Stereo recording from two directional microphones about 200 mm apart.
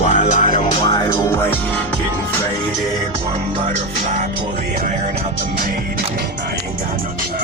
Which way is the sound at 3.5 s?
30° right (ahead or behind).